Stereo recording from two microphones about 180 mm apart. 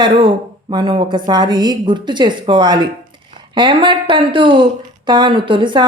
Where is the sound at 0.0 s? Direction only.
25° right (ahead or behind).